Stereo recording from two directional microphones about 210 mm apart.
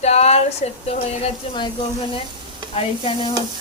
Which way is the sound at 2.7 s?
25° left (ahead or behind).